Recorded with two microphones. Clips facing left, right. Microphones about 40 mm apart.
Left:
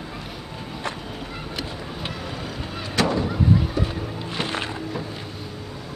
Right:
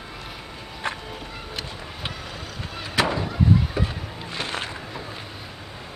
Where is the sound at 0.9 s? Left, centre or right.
Right.